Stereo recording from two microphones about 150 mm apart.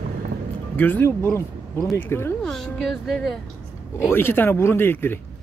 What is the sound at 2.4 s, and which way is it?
Speech, centre (ahead or behind).